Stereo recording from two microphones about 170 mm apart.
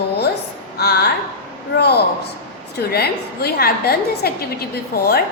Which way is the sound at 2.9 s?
65° left (ahead or behind).